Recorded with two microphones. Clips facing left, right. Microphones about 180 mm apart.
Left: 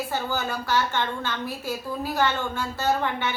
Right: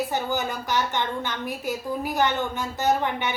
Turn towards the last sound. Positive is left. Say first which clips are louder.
# right 1 dB
turn(degrees=-15)  # may be behind; listen again after turning